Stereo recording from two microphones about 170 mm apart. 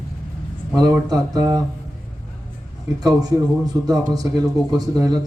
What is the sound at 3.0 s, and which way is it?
Speech, 20° right (ahead or behind).